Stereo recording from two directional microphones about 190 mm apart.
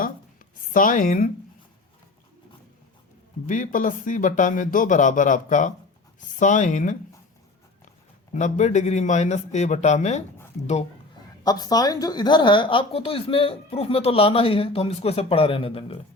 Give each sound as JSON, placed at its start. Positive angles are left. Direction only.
{"t": 0.7, "sound": "speech", "side_deg": 45}
{"t": 3.4, "sound": "speech", "side_deg": 45}
{"t": 8.3, "sound": "speech", "side_deg": 40}
{"t": 11.4, "sound": "a woman's voice", "side_deg": 20}